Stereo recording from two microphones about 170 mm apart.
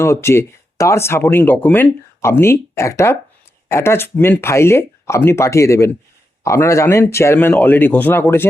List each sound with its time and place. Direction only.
0.0 s speech: 15° left (ahead or behind)